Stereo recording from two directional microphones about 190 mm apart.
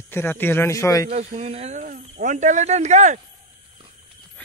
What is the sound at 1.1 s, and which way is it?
Speech, 35° right (ahead or behind).